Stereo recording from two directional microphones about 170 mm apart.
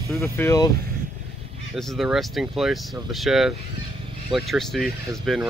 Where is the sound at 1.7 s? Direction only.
Centre (ahead or behind).